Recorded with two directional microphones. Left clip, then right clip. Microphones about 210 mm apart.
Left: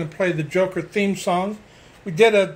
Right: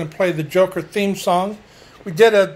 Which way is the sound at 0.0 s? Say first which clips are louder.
Right 3 dB; 5° right (ahead or behind).